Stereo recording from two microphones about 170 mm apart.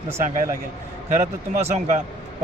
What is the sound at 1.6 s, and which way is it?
Speech, 40° right (ahead or behind).